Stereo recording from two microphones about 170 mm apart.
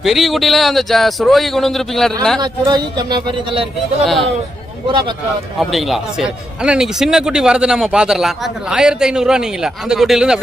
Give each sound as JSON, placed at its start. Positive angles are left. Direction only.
{"t": 0.0, "sound": "a man's voice", "side_deg": 0}
{"t": 2.4, "sound": "speech", "side_deg": -25}
{"t": 4.0, "sound": "a man's voice", "side_deg": 0}
{"t": 5.6, "sound": "a man's voice", "side_deg": 0}